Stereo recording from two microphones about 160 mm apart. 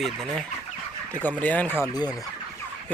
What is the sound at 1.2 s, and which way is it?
Speech, 10° left (ahead or behind).